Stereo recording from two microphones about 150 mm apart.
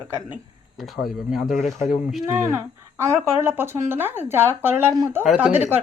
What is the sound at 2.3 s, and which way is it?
Speech, 15° right (ahead or behind).